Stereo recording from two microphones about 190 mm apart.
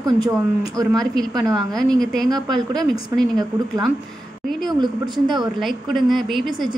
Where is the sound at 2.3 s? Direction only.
20° right (ahead or behind).